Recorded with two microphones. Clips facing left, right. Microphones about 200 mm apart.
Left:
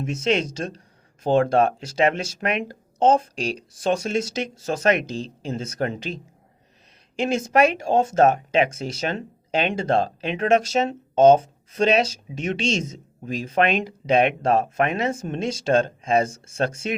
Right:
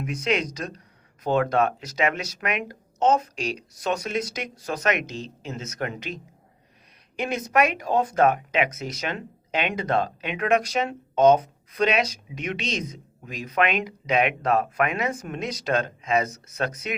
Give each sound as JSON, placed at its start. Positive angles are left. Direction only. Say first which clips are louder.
{"t": 0.0, "sound": "speech", "louder": "left 3 dB", "side_deg": 25}
{"t": 7.2, "sound": "speech", "louder": "left 4 dB", "side_deg": 25}